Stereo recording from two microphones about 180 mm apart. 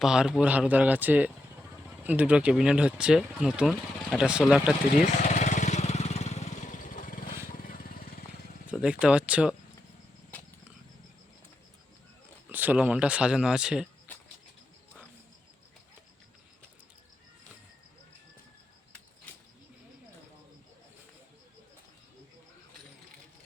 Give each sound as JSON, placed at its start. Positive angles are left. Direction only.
{"t": 0.0, "sound": "speech", "side_deg": -5}
{"t": 5.3, "sound": "vehicle", "side_deg": 40}
{"t": 7.4, "sound": "a sound", "side_deg": 50}
{"t": 8.7, "sound": "speech", "side_deg": -5}
{"t": 12.5, "sound": "speech", "side_deg": -10}
{"t": 14.1, "sound": "bird", "side_deg": 10}